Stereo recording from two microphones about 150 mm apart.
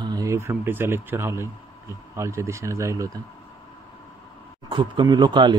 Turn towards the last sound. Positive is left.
turn(degrees=-30)  # may be behind; listen again after turning